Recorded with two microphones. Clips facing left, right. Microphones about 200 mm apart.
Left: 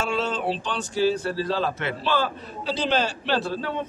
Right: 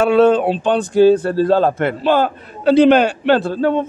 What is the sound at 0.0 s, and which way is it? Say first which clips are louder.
A man's voice: right 14 dB; 60° right (ahead or behind).